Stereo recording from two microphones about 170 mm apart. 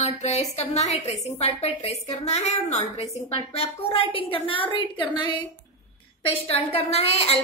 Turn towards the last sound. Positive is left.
turn(degrees=35)  # may be behind; listen again after turning